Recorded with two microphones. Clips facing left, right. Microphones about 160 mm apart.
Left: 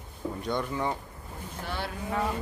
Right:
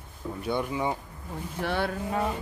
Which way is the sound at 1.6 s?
60° right (ahead or behind).